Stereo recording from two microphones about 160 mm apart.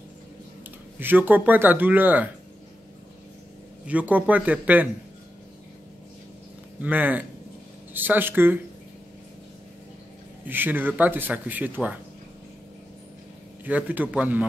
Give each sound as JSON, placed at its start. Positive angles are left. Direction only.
{"t": 0.9, "sound": "speech", "side_deg": -10}
{"t": 3.8, "sound": "speech", "side_deg": -10}
{"t": 6.8, "sound": "speech", "side_deg": -10}
{"t": 10.4, "sound": "speech", "side_deg": -10}
{"t": 13.7, "sound": "speech", "side_deg": -10}